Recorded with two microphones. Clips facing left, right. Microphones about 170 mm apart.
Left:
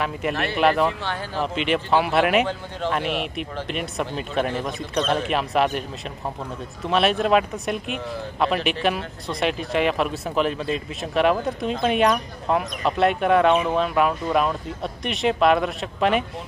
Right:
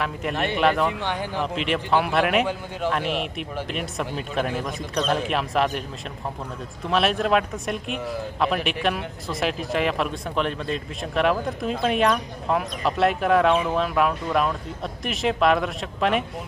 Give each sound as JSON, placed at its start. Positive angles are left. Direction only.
{"t": 0.0, "sound": "speech", "side_deg": 0}
{"t": 1.0, "sound": "speech", "side_deg": -15}
{"t": 1.4, "sound": "speech", "side_deg": 0}
{"t": 6.9, "sound": "speech", "side_deg": 0}